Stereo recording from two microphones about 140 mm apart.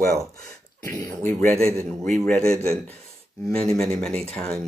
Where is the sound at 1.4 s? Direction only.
5° left (ahead or behind).